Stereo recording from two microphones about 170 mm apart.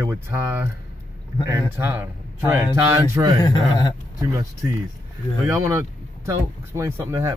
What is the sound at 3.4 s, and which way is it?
Speech, 25° left (ahead or behind).